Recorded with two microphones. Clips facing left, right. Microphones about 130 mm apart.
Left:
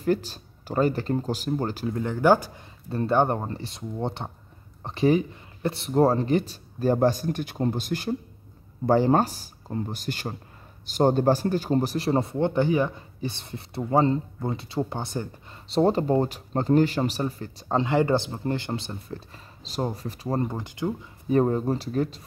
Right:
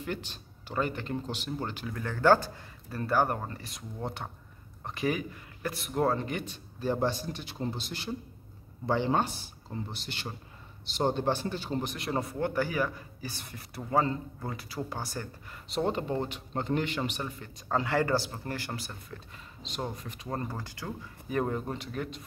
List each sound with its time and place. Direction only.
0.0 s speech: 40° left (ahead or behind)
2.0 s speech: 20° left (ahead or behind)
2.9 s speech: 25° left (ahead or behind)
20.4 s speech: 20° left (ahead or behind)
21.3 s speech: 30° left (ahead or behind)